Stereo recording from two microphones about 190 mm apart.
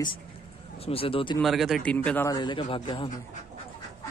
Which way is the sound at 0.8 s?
30° left (ahead or behind).